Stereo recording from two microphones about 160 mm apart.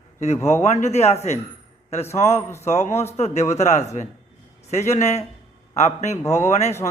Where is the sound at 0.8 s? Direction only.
45° left (ahead or behind).